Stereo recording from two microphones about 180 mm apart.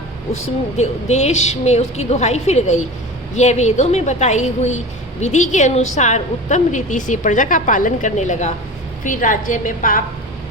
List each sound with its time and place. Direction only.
0.4 s a woman's voice: 40° left (ahead or behind)